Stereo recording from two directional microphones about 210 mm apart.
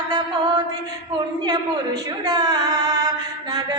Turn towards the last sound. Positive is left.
turn(degrees=-20)  # may be behind; listen again after turning